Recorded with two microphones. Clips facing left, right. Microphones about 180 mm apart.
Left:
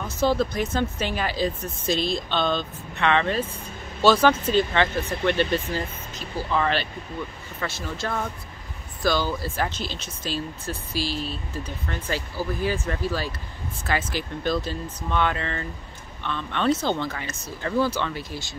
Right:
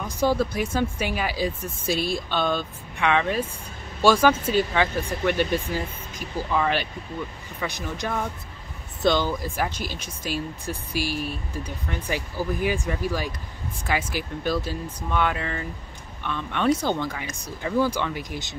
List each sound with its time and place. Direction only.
0.0 s speech: 10° right (ahead or behind)